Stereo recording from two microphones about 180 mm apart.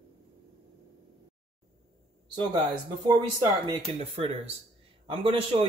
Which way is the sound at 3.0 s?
30° right (ahead or behind).